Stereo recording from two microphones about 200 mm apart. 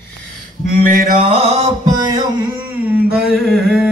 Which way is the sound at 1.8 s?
20° right (ahead or behind).